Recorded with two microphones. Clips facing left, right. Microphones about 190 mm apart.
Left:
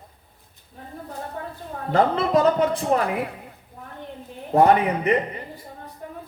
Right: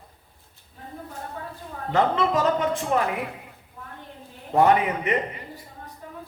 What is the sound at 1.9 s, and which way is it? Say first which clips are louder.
Speech: left 3 dB; 35° left (ahead or behind).